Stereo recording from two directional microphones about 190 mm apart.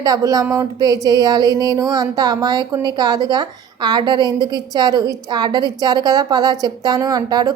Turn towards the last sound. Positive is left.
turn(degrees=-20)  # may be behind; listen again after turning